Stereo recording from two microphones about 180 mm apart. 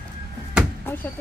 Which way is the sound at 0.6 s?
5° right (ahead or behind).